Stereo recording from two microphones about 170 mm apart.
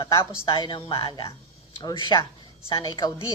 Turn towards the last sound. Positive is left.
turn(degrees=25)  # may be behind; listen again after turning